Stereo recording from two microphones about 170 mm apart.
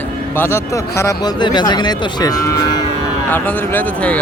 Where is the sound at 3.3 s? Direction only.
10° left (ahead or behind).